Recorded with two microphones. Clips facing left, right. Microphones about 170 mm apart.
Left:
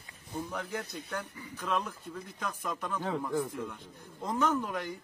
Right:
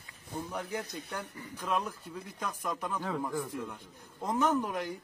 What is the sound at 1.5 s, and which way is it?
Speech, 5° right (ahead or behind).